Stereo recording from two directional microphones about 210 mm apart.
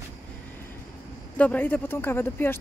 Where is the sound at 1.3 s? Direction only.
10° left (ahead or behind).